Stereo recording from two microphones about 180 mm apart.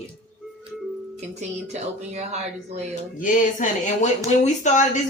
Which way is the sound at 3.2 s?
45° left (ahead or behind).